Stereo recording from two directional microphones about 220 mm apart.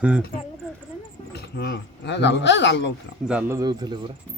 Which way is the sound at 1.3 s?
45° left (ahead or behind).